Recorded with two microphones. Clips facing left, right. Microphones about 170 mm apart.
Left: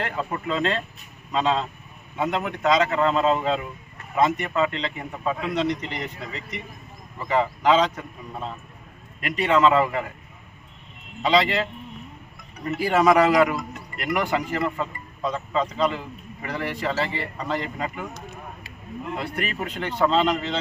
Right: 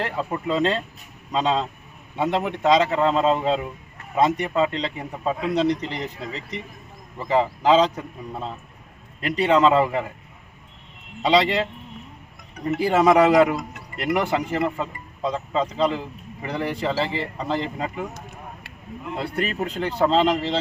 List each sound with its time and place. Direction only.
0.4 s a man's voice: 35° right (ahead or behind)
11.2 s a man's voice: 30° right (ahead or behind)
19.1 s speech: 30° right (ahead or behind)